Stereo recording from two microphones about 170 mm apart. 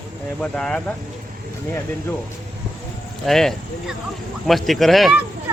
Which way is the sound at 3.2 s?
Centre (ahead or behind).